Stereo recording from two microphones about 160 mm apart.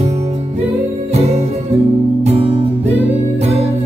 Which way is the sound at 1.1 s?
45° right (ahead or behind).